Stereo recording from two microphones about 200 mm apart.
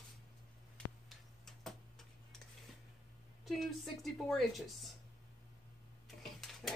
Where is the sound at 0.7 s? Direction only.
Centre (ahead or behind).